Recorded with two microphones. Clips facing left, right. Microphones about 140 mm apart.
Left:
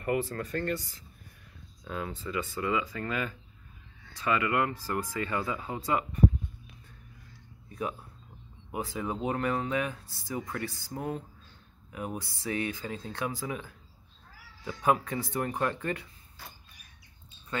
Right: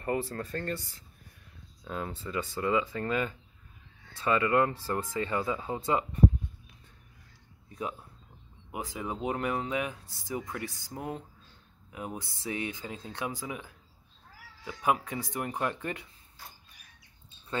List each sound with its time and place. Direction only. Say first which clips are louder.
0.0 s speech: left 2 dB; 30° right (ahead or behind)
1.9 s speech: left 1 dB; 30° right (ahead or behind)
8.7 s speech: left 2 dB; 15° right (ahead or behind)